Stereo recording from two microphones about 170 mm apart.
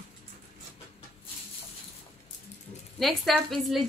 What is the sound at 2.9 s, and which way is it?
Speech, centre (ahead or behind).